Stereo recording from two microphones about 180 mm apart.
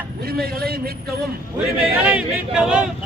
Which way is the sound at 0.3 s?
55° right (ahead or behind).